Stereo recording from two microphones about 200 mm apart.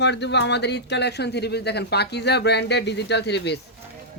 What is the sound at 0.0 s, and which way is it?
Speech, 60° left (ahead or behind).